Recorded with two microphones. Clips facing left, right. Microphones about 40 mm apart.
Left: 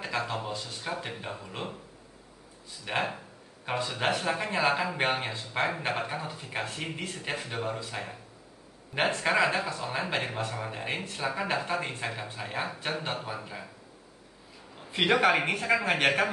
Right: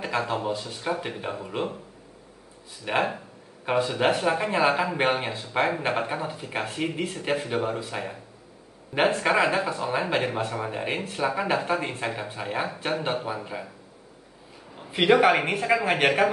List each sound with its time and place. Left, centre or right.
0.2 s speech: centre
2.8 s speech: centre
14.8 s speech: centre